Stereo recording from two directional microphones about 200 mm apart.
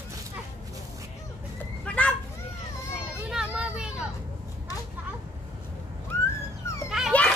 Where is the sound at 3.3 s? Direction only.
5° right (ahead or behind).